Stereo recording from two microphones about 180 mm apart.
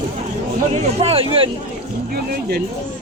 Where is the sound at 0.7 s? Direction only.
35° right (ahead or behind).